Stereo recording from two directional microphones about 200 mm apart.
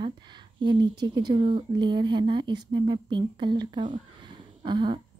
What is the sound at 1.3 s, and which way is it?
A woman's voice, 25° right (ahead or behind).